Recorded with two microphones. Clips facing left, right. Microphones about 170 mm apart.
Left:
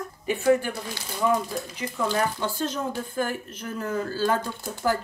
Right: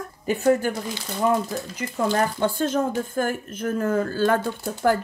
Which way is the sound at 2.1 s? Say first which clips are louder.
Right 4 dB; 50° right (ahead or behind).